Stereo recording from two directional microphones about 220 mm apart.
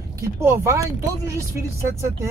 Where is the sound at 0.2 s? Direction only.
10° right (ahead or behind).